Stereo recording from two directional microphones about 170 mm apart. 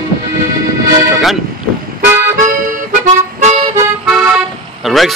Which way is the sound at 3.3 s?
40° right (ahead or behind).